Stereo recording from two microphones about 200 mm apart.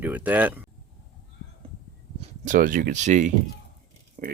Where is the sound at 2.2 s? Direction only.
40° right (ahead or behind).